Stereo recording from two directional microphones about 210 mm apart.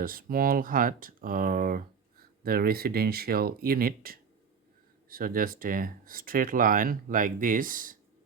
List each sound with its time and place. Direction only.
0.0 s speech: 45° right (ahead or behind)